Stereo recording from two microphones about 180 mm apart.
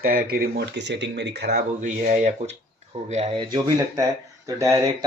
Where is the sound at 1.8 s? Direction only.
45° right (ahead or behind).